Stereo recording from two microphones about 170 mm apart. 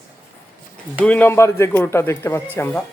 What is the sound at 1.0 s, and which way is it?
Speech, 10° left (ahead or behind).